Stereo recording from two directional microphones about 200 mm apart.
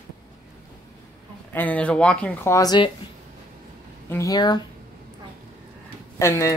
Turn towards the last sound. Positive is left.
turn(degrees=15)  # may be behind; listen again after turning